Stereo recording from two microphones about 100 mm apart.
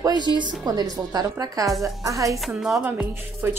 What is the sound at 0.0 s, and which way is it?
A woman's voice, 45° right (ahead or behind).